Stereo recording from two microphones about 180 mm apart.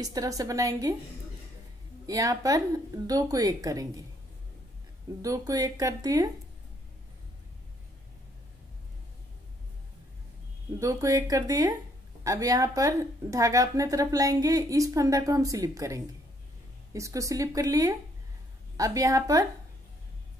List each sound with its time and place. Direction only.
0.0 s a woman's voice: 20° right (ahead or behind)
2.0 s a woman's voice: 20° right (ahead or behind)
5.2 s a woman's voice: 20° right (ahead or behind)
10.8 s a woman's voice: 20° right (ahead or behind)